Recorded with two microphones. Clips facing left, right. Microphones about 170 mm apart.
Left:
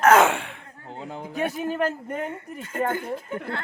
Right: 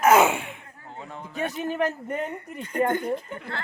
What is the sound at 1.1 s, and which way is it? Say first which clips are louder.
Speech: left 5 dB; 90° left.